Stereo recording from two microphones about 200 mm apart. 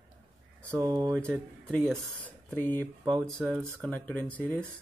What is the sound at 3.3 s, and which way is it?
Speech, 10° right (ahead or behind).